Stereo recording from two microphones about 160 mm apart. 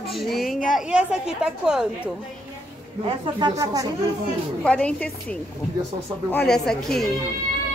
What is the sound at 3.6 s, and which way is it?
Speech, 20° right (ahead or behind).